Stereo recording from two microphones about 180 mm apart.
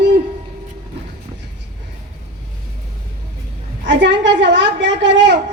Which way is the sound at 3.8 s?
70° right (ahead or behind).